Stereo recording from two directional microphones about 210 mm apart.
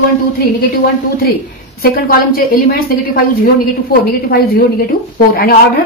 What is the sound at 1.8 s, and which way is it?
A woman's voice, 45° left (ahead or behind).